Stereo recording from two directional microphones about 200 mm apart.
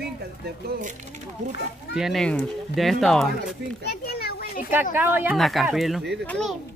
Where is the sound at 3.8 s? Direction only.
50° left (ahead or behind).